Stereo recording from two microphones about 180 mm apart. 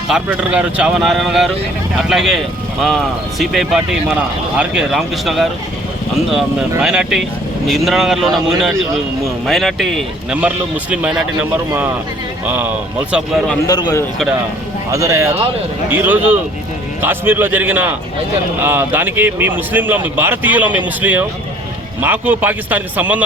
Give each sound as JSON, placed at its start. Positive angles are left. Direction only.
{"t": 0.1, "sound": "a man's voice", "side_deg": -5}
{"t": 12.5, "sound": "a man's voice", "side_deg": -10}
{"t": 13.7, "sound": "a man's voice", "side_deg": 20}
{"t": 14.9, "sound": "a man's voice", "side_deg": -15}